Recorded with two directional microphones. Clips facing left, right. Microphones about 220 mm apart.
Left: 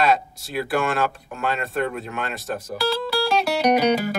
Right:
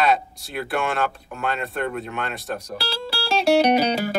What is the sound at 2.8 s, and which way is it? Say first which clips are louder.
Music: left 7 dB; 30° right (ahead or behind).